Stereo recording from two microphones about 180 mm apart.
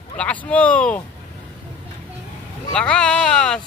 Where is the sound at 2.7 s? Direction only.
5° left (ahead or behind).